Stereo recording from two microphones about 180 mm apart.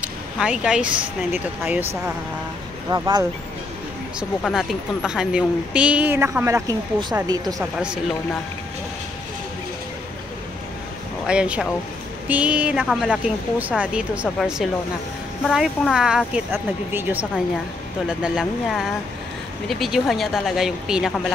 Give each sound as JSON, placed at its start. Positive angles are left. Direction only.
{"t": 0.0, "sound": "speech", "side_deg": -5}
{"t": 2.9, "sound": "speech", "side_deg": -25}
{"t": 4.4, "sound": "a woman's voice", "side_deg": 0}
{"t": 11.2, "sound": "a woman's voice", "side_deg": -5}